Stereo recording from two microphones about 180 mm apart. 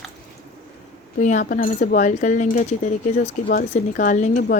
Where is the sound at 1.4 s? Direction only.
55° left (ahead or behind).